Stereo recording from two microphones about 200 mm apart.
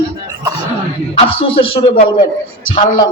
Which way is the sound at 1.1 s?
30° left (ahead or behind).